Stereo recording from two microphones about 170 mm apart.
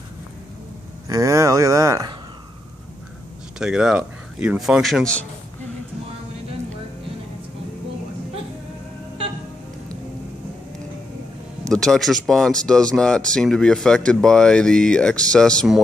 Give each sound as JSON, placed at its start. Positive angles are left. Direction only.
{"t": 1.0, "sound": "speech", "side_deg": -20}
{"t": 3.5, "sound": "speech", "side_deg": -5}
{"t": 11.7, "sound": "speech", "side_deg": 5}